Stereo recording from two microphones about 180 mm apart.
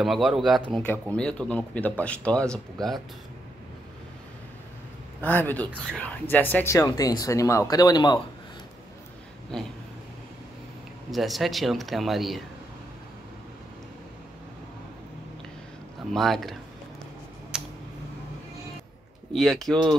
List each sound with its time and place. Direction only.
0.0 s speech: centre (ahead or behind)
5.2 s speech: 10° left (ahead or behind)
9.5 s speech: 5° left (ahead or behind)
11.1 s speech: centre (ahead or behind)
16.1 s speech: centre (ahead or behind)
17.5 s a sound: 5° right (ahead or behind)
19.3 s speech: centre (ahead or behind)